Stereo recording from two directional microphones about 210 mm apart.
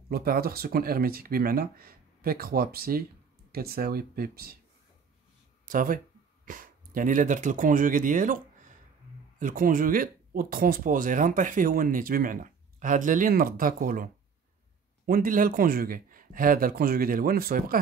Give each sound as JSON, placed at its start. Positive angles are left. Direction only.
{"t": 0.1, "sound": "speech", "side_deg": -45}
{"t": 5.7, "sound": "speech", "side_deg": -40}